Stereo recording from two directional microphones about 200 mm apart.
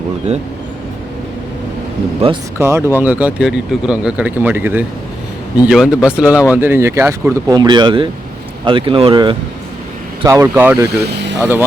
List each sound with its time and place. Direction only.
2.6 s speech: 15° right (ahead or behind)
10.2 s speech: 15° right (ahead or behind)
10.8 s speech: 55° right (ahead or behind)
11.3 s speech: 10° right (ahead or behind)